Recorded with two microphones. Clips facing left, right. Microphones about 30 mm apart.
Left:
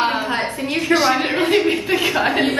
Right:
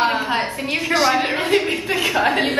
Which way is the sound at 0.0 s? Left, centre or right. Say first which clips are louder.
Even; centre.